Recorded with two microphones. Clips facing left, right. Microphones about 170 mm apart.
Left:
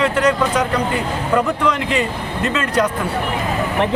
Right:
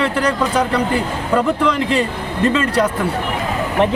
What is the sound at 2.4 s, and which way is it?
Speech, 30° right (ahead or behind).